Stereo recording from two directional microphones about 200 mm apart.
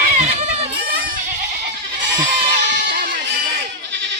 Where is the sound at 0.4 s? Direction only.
30° right (ahead or behind).